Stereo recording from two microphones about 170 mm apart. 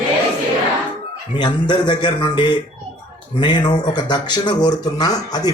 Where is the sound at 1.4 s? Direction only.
25° left (ahead or behind).